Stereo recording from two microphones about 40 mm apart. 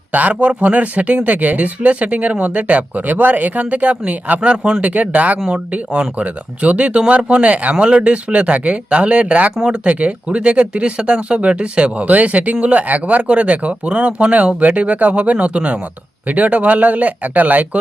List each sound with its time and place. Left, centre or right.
0.1 s speech: right